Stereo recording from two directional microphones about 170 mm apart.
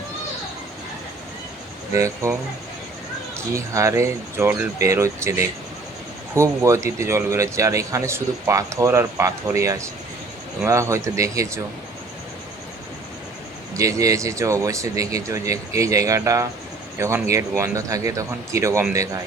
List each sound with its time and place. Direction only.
2.0 s speech: 20° right (ahead or behind)
3.5 s a man's voice: 20° right (ahead or behind)
13.7 s a man's voice: 20° right (ahead or behind)